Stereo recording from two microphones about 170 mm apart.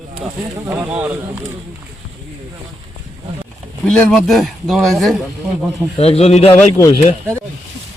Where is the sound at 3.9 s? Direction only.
5° left (ahead or behind).